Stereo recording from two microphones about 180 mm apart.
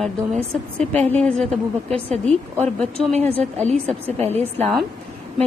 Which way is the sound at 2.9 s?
35° right (ahead or behind).